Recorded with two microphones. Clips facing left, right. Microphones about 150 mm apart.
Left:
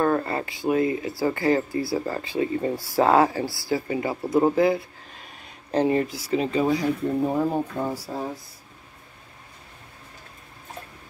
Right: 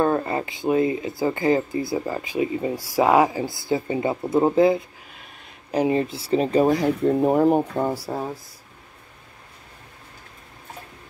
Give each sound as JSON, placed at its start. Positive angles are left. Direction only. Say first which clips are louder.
{"t": 0.0, "sound": "speech", "louder": "right 2 dB", "side_deg": -20}